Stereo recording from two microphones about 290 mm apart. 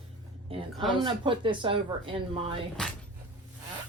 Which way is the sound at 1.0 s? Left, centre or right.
Centre.